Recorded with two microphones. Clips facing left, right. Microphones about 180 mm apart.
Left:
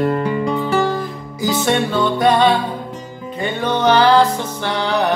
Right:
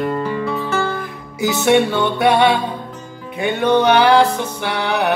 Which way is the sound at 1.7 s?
10° right (ahead or behind).